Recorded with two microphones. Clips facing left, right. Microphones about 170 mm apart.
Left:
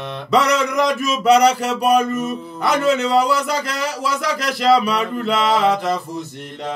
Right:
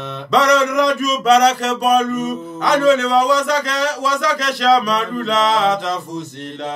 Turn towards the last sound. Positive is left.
turn(degrees=10)  # may be behind; listen again after turning